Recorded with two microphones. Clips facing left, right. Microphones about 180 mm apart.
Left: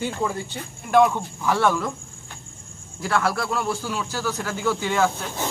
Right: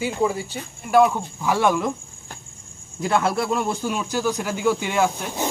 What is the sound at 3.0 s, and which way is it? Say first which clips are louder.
Speech: right 2 dB; 20° right (ahead or behind).